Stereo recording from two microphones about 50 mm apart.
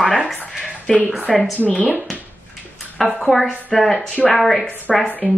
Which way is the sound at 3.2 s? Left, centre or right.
Centre.